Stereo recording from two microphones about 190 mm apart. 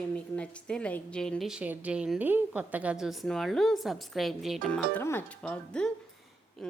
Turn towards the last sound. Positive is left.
turn(degrees=0)  # may be behind; listen again after turning